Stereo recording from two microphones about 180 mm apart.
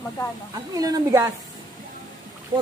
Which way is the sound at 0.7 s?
20° right (ahead or behind).